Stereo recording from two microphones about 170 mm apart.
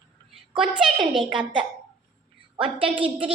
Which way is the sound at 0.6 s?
5° right (ahead or behind).